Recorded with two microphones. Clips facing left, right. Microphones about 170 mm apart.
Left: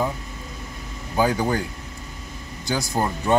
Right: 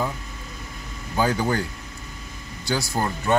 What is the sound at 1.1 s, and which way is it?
Speech, 15° left (ahead or behind).